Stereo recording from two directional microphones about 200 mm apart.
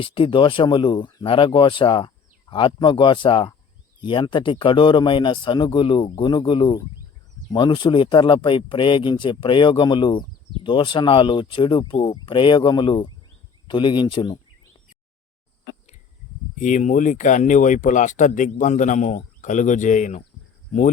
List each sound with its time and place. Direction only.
0.0 s speech: 25° left (ahead or behind)
16.6 s speech: 40° left (ahead or behind)